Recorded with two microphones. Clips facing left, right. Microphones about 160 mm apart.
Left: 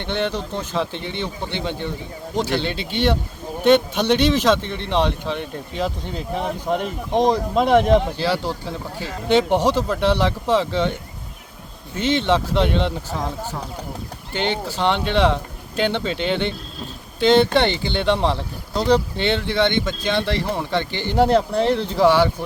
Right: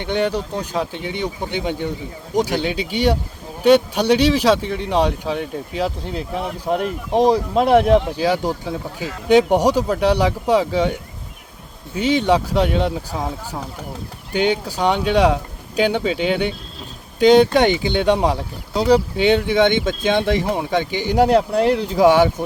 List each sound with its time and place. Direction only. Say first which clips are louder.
0.0 s speech: right 3 dB; 10° right (ahead or behind)
11.9 s speech: right 2 dB; 10° right (ahead or behind)
14.3 s speech: right 4 dB; 10° right (ahead or behind)